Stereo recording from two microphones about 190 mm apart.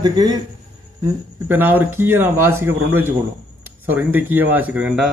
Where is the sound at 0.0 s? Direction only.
20° right (ahead or behind).